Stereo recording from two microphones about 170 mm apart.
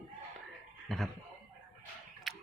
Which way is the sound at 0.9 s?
Centre (ahead or behind).